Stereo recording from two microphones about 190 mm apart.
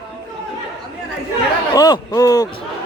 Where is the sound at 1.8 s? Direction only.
20° left (ahead or behind).